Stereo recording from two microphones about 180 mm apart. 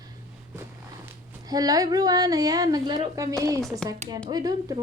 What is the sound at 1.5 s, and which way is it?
A woman's voice, 20° right (ahead or behind).